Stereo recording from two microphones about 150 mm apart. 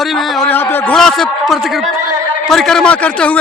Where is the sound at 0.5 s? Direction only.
15° left (ahead or behind).